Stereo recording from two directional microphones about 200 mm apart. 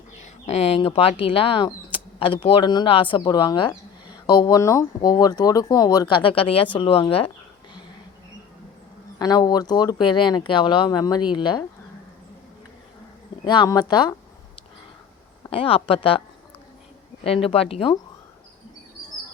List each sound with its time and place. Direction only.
0.2 s speech: 35° left (ahead or behind)
9.1 s speech: 20° left (ahead or behind)
13.4 s speech: 20° left (ahead or behind)
15.4 s speech: 25° left (ahead or behind)
17.2 s speech: 30° left (ahead or behind)